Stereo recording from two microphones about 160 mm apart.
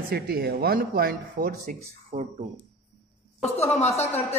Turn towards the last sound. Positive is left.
turn(degrees=45)  # may be behind; listen again after turning